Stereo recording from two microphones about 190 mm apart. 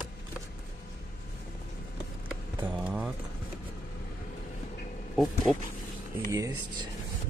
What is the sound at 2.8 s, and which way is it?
Clip-clop, 5° right (ahead or behind).